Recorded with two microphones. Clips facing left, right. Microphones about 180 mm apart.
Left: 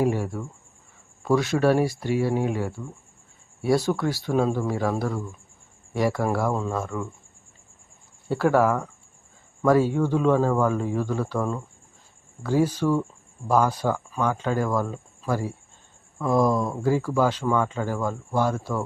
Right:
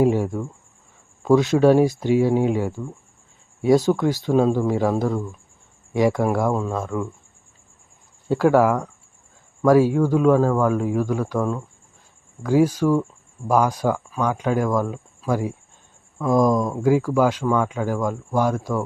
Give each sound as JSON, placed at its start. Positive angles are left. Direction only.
{"t": 0.2, "sound": "speech", "side_deg": -20}
{"t": 8.3, "sound": "speech", "side_deg": -10}